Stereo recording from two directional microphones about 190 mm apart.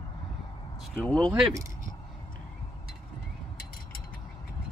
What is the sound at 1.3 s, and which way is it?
Speech, 15° right (ahead or behind).